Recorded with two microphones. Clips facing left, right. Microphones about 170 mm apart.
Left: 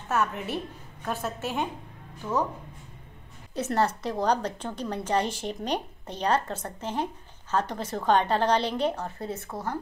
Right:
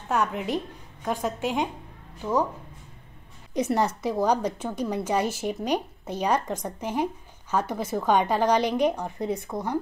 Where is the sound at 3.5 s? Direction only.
15° right (ahead or behind).